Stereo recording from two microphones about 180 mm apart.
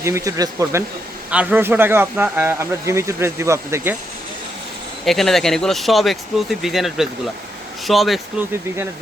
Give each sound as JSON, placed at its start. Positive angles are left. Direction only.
{"t": 0.0, "sound": "a man's voice", "side_deg": -15}
{"t": 5.0, "sound": "speech", "side_deg": 0}